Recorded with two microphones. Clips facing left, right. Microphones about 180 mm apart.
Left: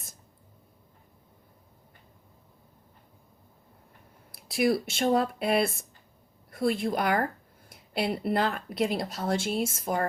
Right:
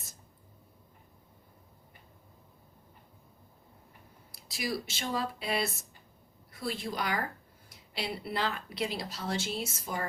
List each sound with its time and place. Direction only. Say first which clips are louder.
4.3 s speech: left 10 dB; 60° left (ahead or behind)